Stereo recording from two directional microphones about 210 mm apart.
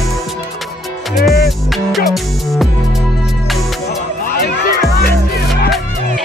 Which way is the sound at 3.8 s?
45° left (ahead or behind).